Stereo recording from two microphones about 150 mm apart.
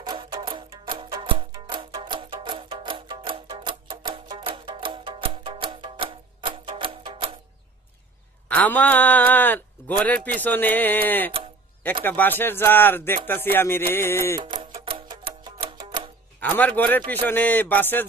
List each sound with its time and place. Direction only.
0.0 s music: 30° right (ahead or behind)
8.4 s speech: 10° left (ahead or behind)
14.3 s music: 30° right (ahead or behind)
16.4 s speech: 10° left (ahead or behind)